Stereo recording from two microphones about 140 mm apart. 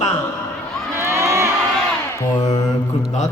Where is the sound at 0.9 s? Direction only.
20° right (ahead or behind).